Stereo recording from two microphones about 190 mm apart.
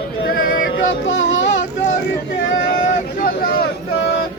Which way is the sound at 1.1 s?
80° left.